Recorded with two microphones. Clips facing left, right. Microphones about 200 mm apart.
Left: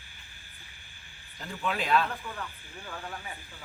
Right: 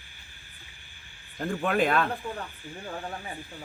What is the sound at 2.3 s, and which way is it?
Speech, 35° right (ahead or behind).